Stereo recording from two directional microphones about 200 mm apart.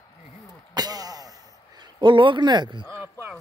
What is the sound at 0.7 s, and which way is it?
Music, 20° right (ahead or behind).